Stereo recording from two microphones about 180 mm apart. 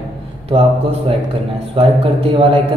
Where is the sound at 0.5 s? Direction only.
30° right (ahead or behind).